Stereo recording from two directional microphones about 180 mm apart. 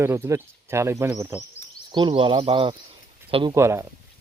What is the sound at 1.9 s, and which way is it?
Speech, 25° right (ahead or behind).